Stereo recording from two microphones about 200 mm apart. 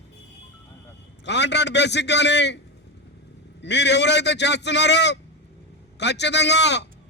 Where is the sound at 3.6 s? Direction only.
60° left (ahead or behind).